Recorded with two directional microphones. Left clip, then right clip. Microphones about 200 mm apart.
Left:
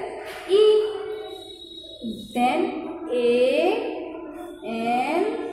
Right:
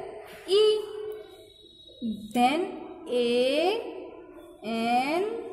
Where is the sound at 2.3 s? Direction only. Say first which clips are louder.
Left 2 dB; 45° right (ahead or behind).